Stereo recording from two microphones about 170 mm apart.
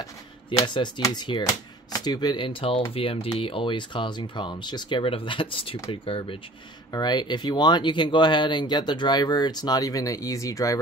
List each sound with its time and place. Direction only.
0.5 s speech: 30° left (ahead or behind)